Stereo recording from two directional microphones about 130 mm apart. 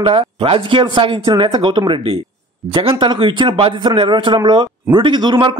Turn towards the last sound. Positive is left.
turn(degrees=-35)  # may be behind; listen again after turning